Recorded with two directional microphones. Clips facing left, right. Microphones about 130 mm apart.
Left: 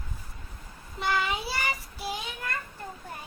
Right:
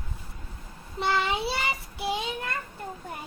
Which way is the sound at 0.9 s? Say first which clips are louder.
Right 2 dB; 25° right (ahead or behind).